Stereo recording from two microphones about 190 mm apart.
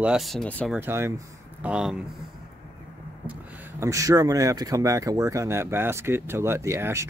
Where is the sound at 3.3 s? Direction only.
15° right (ahead or behind).